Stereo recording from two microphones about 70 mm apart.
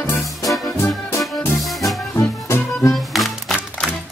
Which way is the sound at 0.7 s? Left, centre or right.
Left.